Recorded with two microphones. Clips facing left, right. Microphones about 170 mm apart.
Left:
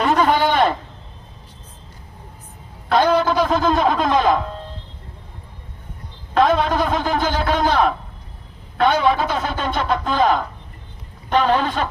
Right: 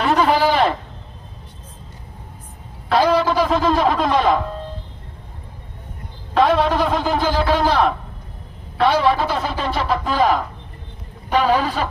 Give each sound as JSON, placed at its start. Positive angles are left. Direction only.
{"t": 0.0, "sound": "a sound", "side_deg": 0}
{"t": 2.9, "sound": "speech", "side_deg": -5}
{"t": 6.3, "sound": "speech", "side_deg": 0}